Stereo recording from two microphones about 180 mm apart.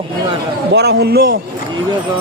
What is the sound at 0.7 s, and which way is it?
Speech, 65° right (ahead or behind).